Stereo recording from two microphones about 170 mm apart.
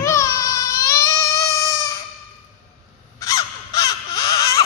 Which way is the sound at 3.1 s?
20° left (ahead or behind).